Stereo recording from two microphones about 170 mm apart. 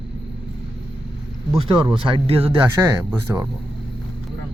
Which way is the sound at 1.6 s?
30° right (ahead or behind).